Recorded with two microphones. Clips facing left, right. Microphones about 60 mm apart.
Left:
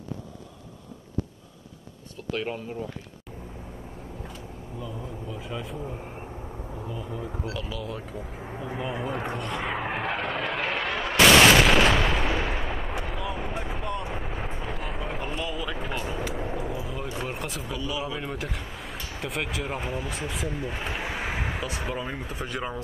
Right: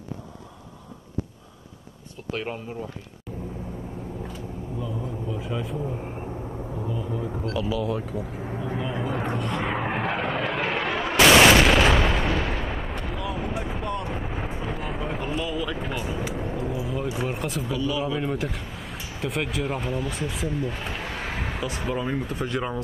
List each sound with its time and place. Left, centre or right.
2.3 s speech: centre
4.3 s vehicle: centre
12.3 s artillery fire: centre
19.1 s speech: centre